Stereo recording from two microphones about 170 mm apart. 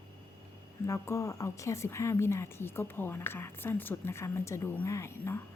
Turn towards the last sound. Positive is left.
turn(degrees=15)  # may be behind; listen again after turning